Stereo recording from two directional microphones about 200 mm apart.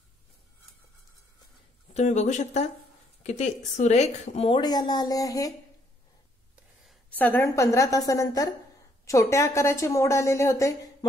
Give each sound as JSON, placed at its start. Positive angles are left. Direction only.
{"t": 2.0, "sound": "a woman's voice", "side_deg": 35}
{"t": 6.5, "sound": "gasp", "side_deg": -5}
{"t": 7.2, "sound": "a woman's voice", "side_deg": 10}